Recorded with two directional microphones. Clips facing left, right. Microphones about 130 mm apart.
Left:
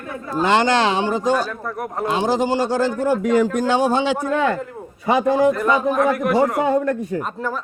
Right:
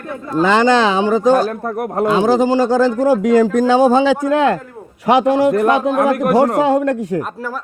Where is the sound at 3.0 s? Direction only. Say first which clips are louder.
Right 3 dB; 90° right; by 6.5 s 65° right (ahead or behind).